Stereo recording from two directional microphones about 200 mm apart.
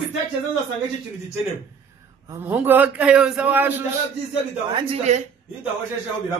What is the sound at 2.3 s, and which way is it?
A man's voice, 10° right (ahead or behind).